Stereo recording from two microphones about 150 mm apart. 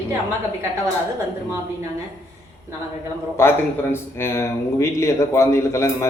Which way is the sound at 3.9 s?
15° left (ahead or behind).